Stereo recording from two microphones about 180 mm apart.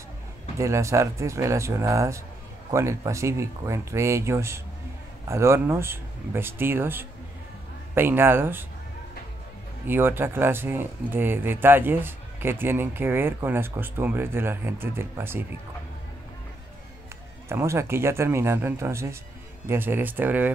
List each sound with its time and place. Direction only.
0.6 s speech: 15° right (ahead or behind)
9.8 s speech: 10° right (ahead or behind)
17.5 s speech: 15° right (ahead or behind)